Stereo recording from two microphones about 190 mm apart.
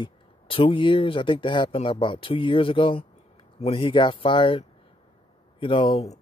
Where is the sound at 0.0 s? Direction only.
30° left (ahead or behind).